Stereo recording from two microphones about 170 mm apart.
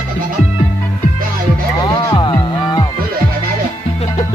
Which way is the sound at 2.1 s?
30° left (ahead or behind).